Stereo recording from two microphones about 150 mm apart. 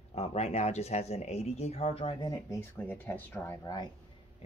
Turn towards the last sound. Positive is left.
turn(degrees=15)  # may be behind; listen again after turning